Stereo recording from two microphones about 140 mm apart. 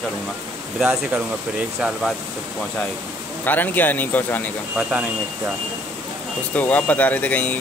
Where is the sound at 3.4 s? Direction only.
15° left (ahead or behind).